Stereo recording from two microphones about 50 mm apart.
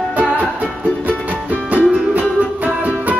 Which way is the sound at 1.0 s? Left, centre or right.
Right.